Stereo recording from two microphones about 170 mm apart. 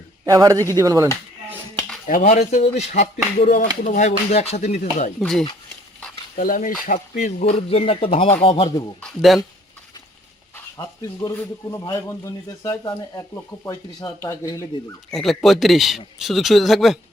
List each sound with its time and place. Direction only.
0.3 s speech: 20° right (ahead or behind)
2.0 s a sound: 50° left (ahead or behind)
5.2 s speech: 5° left (ahead or behind)
6.3 s a sound: 50° left (ahead or behind)
6.8 s speech: 50° left (ahead or behind); by 8.7 s 35° left (ahead or behind)
9.0 s speech: centre (ahead or behind)
10.5 s a man's voice: 15° left (ahead or behind)
15.1 s speech: centre (ahead or behind)